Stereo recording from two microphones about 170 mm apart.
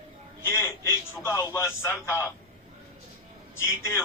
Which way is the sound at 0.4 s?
15° left (ahead or behind).